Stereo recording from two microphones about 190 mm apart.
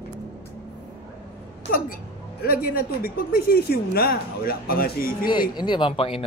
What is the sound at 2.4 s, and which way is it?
Speech, 50° left (ahead or behind).